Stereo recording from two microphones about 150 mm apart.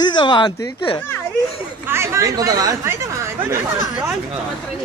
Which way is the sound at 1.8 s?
15° right (ahead or behind).